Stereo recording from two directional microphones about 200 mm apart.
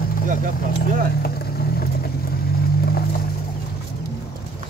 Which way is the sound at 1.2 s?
50° left (ahead or behind).